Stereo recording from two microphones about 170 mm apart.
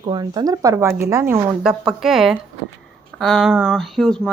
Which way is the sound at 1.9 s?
Centre (ahead or behind).